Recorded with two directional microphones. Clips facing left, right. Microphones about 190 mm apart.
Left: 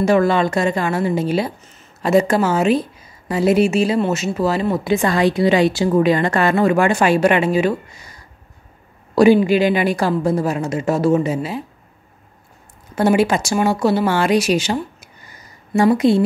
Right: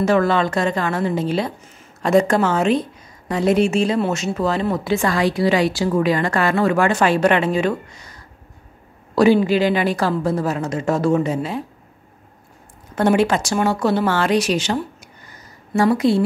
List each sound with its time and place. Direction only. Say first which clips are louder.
0.0 s a woman's voice: left 2 dB; 15° left (ahead or behind)
12.9 s speech: left 1 dB; 10° left (ahead or behind)